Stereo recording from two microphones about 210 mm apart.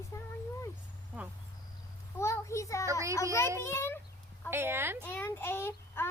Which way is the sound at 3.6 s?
10° left (ahead or behind).